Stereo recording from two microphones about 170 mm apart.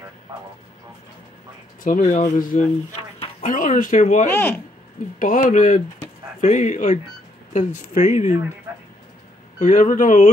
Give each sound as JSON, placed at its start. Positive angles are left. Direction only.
{"t": 1.8, "sound": "speech", "side_deg": 50}
{"t": 4.3, "sound": "speech", "side_deg": 10}
{"t": 5.2, "sound": "speech", "side_deg": 50}
{"t": 9.6, "sound": "speech", "side_deg": 50}